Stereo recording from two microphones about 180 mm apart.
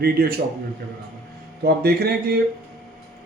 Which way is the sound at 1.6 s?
60° right (ahead or behind).